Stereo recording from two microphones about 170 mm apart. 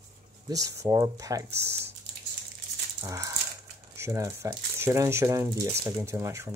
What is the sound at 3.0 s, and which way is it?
Speech, 20° right (ahead or behind).